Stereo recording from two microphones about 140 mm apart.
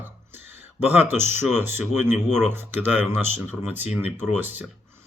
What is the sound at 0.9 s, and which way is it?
Speech, 15° right (ahead or behind).